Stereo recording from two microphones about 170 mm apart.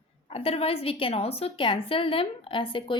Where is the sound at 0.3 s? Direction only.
35° left (ahead or behind).